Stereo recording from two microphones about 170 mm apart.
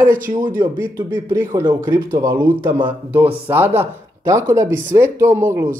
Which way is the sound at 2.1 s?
25° right (ahead or behind).